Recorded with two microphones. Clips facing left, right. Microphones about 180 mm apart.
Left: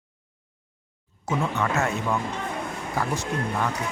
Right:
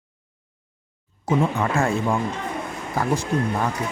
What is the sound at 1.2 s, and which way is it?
Speech, 30° right (ahead or behind).